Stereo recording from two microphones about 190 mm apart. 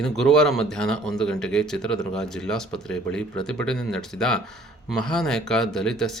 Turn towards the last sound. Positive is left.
turn(degrees=5)  # may be behind; listen again after turning